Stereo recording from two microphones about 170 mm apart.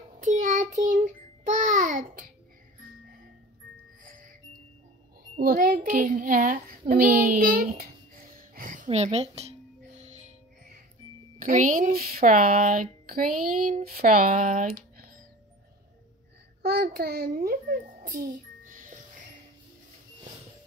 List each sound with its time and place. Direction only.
0.2 s child singing: 45° right (ahead or behind)
4.0 s music: 50° right (ahead or behind)
5.4 s a child's voice: 55° right (ahead or behind)
6.9 s a sound: 55° right (ahead or behind)
8.8 s speech: 35° right (ahead or behind)
11.4 s speech: 50° right (ahead or behind)
16.6 s a child's voice: 65° right (ahead or behind); by 19.2 s 50° right (ahead or behind)